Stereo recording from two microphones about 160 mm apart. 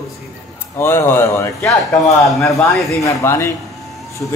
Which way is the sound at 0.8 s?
15° left (ahead or behind).